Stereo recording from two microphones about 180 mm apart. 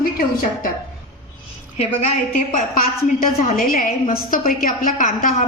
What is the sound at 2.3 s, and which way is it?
A woman's voice, 50° left (ahead or behind).